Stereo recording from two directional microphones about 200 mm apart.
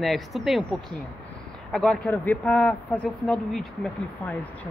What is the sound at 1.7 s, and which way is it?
A woman's voice, 5° left (ahead or behind).